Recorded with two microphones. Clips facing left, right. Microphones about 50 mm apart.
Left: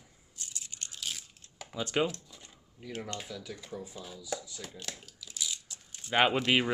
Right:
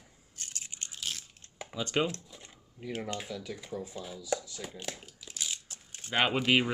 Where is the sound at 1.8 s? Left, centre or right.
Centre.